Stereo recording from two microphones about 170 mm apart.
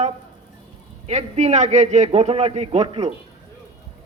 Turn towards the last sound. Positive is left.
turn(degrees=-35)  # may be behind; listen again after turning